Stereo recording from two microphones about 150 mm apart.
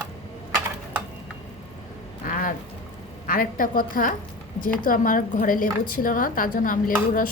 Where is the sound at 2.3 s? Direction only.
65° left (ahead or behind).